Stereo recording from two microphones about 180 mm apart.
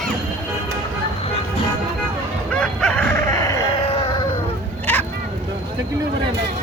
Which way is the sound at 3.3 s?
20° left (ahead or behind).